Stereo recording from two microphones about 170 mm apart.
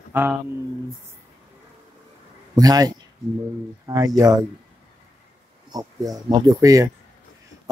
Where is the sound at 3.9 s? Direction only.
20° right (ahead or behind).